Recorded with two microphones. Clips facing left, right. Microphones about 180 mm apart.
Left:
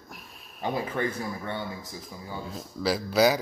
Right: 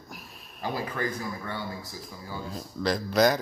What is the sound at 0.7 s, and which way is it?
Speech, 25° left (ahead or behind).